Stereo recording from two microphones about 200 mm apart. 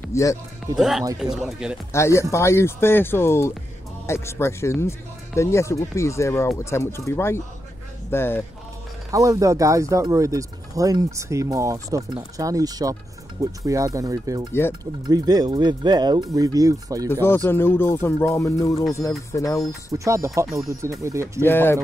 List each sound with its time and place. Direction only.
0.1 s speech: 15° left (ahead or behind)
0.7 s speech: centre (ahead or behind)
1.9 s speech: 15° left (ahead or behind)
9.1 s speech: 15° right (ahead or behind)
17.1 s speech: 10° left (ahead or behind)
19.9 s speech: 15° right (ahead or behind)
21.5 s speech: 10° left (ahead or behind)